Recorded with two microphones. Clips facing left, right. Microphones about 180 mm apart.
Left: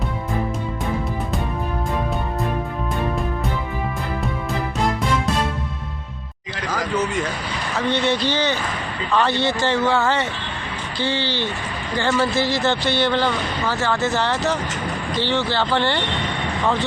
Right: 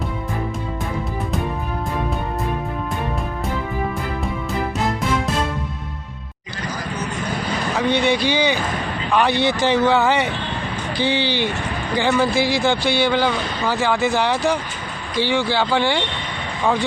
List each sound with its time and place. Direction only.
7.8 s speech: 15° right (ahead or behind)